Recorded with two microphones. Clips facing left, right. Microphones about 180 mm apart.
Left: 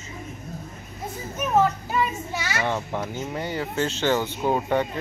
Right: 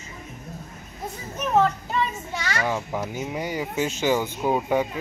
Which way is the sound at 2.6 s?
5° right (ahead or behind).